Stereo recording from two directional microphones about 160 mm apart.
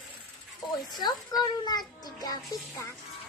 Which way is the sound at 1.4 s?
25° left (ahead or behind).